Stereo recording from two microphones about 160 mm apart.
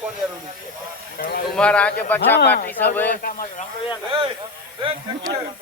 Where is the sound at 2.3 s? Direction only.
90° left.